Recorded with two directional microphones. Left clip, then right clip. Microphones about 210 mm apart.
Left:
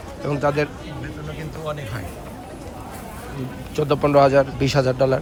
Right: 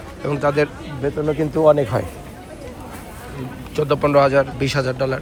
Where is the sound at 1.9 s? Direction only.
10° right (ahead or behind).